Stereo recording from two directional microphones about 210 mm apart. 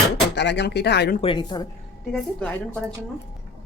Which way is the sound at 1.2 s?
25° left (ahead or behind).